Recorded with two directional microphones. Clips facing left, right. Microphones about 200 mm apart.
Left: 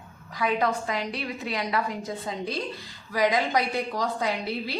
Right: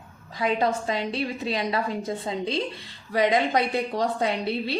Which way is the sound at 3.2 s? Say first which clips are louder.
Right 2 dB; 25° right (ahead or behind).